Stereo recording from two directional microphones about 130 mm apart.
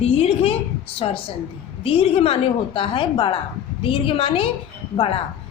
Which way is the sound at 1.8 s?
45° left (ahead or behind).